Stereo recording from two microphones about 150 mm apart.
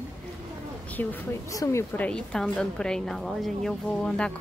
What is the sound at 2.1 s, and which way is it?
A woman's voice, 5° left (ahead or behind).